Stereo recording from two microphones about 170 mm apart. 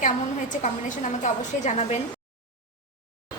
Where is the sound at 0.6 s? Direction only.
45° left (ahead or behind).